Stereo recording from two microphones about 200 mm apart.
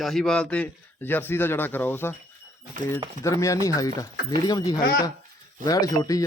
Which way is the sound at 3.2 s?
15° left (ahead or behind).